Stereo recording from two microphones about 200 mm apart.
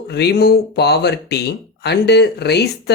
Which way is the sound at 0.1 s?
55° left (ahead or behind).